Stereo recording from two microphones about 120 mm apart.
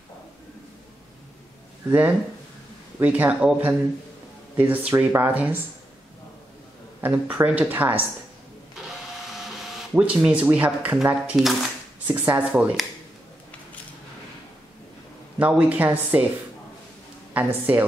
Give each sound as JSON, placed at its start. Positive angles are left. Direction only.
{"t": 1.9, "sound": "speech", "side_deg": -15}
{"t": 7.0, "sound": "speech", "side_deg": -15}
{"t": 9.3, "sound": "printer", "side_deg": -5}
{"t": 9.9, "sound": "speech", "side_deg": -10}
{"t": 15.3, "sound": "a woman's voice", "side_deg": -15}